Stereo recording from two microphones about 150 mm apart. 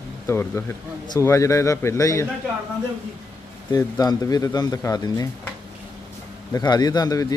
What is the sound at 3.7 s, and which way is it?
Speech, 25° left (ahead or behind).